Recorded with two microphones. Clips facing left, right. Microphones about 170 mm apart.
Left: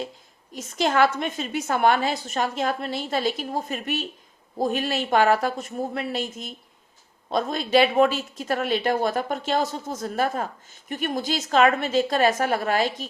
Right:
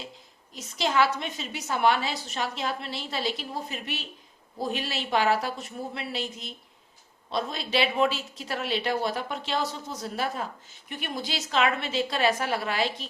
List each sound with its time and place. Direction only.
0.5 s speech: 50° left (ahead or behind)